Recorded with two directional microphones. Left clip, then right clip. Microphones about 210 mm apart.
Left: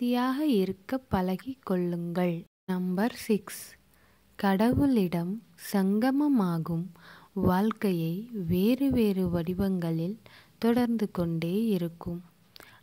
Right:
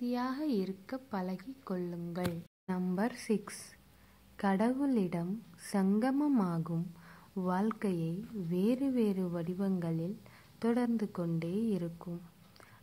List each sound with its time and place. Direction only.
0.0 s a woman's voice: 45° left (ahead or behind)